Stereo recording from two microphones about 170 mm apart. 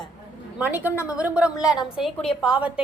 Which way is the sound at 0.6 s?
10° right (ahead or behind).